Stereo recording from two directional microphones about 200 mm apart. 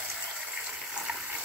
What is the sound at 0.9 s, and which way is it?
Water, 5° right (ahead or behind).